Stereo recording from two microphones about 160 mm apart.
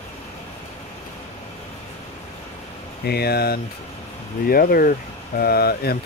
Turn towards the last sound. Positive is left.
turn(degrees=75)  # may be behind; listen again after turning